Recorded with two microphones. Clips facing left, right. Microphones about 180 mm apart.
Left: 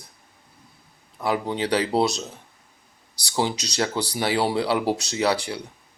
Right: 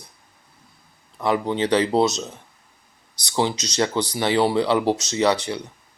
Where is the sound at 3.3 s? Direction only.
5° left (ahead or behind).